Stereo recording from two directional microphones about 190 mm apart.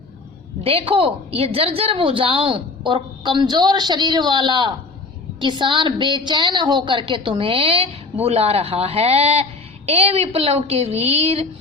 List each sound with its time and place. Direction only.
0.6 s a woman's voice: 30° right (ahead or behind)